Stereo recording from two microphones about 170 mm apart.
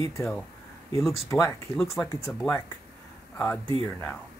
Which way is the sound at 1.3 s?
15° left (ahead or behind).